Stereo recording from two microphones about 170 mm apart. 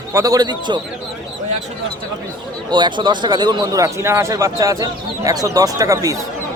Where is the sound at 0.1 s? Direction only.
20° right (ahead or behind).